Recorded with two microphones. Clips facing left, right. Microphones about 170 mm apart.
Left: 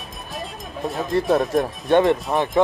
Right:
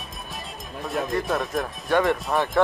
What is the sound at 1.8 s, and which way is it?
Speech, 25° left (ahead or behind).